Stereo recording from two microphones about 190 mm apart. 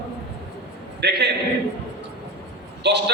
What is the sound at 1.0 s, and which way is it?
Speech, 60° right (ahead or behind).